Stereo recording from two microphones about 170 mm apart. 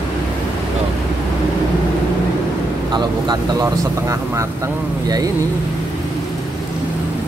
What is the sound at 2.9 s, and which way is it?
Speech, 25° right (ahead or behind).